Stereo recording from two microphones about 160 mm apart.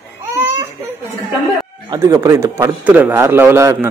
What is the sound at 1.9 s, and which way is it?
A man's voice, 15° right (ahead or behind).